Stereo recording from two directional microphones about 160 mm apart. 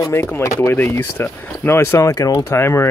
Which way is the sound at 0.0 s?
15° left (ahead or behind).